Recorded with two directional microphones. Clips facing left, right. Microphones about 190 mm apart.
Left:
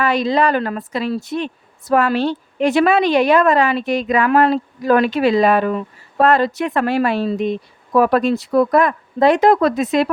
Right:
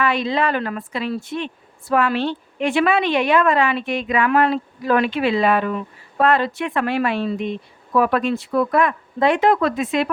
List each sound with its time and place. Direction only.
0.0 s a woman's voice: 40° left (ahead or behind)